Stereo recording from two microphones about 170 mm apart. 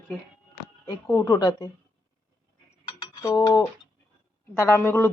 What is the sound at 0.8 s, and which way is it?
Speech, 20° left (ahead or behind).